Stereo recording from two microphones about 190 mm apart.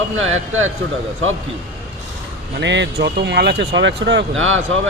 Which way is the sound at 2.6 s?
65° right (ahead or behind).